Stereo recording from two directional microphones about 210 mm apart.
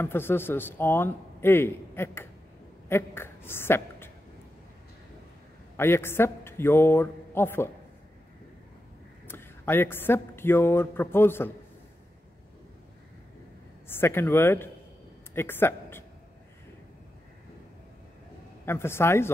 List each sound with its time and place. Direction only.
0.0 s speech: 10° left (ahead or behind)
5.8 s speech: 10° left (ahead or behind)
9.3 s speech: 10° left (ahead or behind)
13.8 s speech: 10° left (ahead or behind)
18.7 s speech: 10° left (ahead or behind)